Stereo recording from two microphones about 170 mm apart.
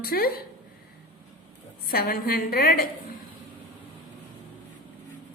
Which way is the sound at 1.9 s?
60° left (ahead or behind).